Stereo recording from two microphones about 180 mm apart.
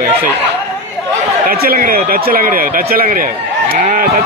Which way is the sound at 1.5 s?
55° right (ahead or behind).